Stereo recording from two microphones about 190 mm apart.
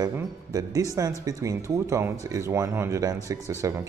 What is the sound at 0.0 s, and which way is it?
A man's voice, 20° right (ahead or behind).